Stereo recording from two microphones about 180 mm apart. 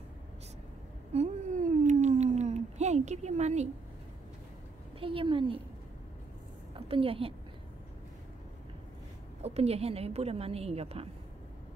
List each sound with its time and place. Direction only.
1.1 s a sound: 40° right (ahead or behind)
5.0 s a woman's voice: 30° right (ahead or behind)
6.7 s a woman's voice: 30° right (ahead or behind)
9.4 s a woman's voice: 35° right (ahead or behind)